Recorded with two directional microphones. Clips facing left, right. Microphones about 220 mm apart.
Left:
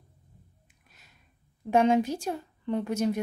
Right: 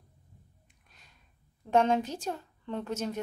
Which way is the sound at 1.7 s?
10° left (ahead or behind).